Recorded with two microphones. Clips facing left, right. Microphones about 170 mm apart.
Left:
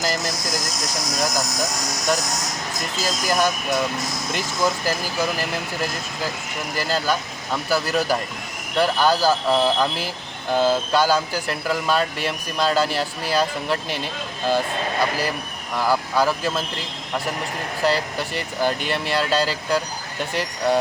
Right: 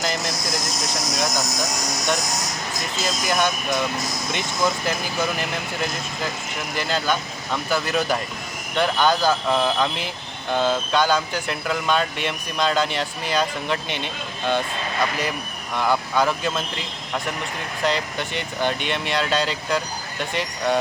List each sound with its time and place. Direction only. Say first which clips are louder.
3.0 s speech: left 1 dB; 5° left (ahead or behind)
15.7 s speech: left 1 dB; 5° left (ahead or behind)
17.8 s speech: left 2 dB; 5° left (ahead or behind)